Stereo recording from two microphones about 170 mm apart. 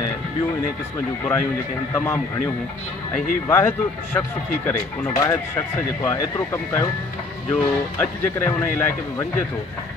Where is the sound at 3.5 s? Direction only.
15° left (ahead or behind).